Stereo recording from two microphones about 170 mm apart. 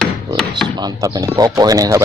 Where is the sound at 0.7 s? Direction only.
20° right (ahead or behind).